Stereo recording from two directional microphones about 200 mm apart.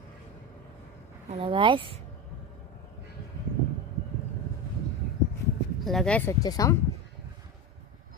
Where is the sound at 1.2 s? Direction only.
25° right (ahead or behind).